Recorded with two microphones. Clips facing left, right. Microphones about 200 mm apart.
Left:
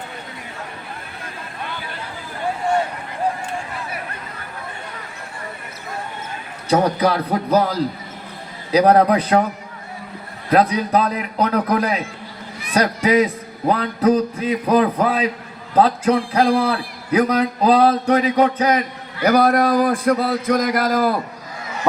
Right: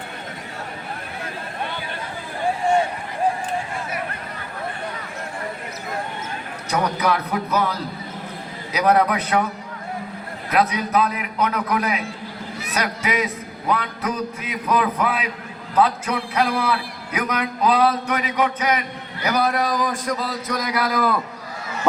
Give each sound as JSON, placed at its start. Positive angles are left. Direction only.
{"t": 6.7, "sound": "a man's voice", "side_deg": 30}
{"t": 10.5, "sound": "a man's voice", "side_deg": 35}